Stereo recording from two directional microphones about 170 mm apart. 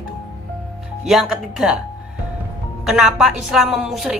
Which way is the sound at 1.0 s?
Centre (ahead or behind).